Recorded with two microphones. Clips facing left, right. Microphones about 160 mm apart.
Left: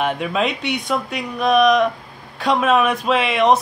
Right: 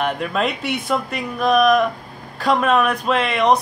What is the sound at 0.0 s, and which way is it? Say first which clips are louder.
Speech: left 1 dB; centre (ahead or behind).